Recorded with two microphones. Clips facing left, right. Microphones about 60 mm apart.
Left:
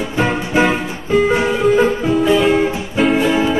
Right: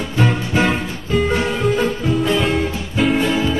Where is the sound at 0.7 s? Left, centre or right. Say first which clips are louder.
Left 3 dB; centre.